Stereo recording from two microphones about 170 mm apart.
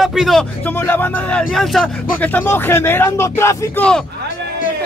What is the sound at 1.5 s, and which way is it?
Speech, centre (ahead or behind).